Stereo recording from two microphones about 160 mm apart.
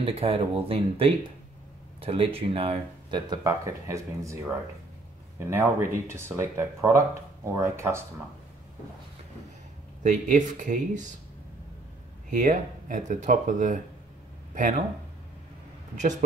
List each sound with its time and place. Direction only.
0.0 s speech: 35° right (ahead or behind); by 4.4 s 20° right (ahead or behind)
5.5 s speech: 15° right (ahead or behind)
10.0 s speech: 50° right (ahead or behind)
12.3 s speech: 55° right (ahead or behind)
16.0 s speech: 50° right (ahead or behind)